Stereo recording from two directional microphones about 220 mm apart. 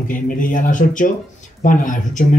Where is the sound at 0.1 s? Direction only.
35° left (ahead or behind).